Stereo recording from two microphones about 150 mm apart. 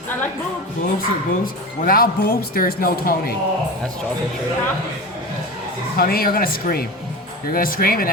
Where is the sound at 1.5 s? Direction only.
75° left (ahead or behind).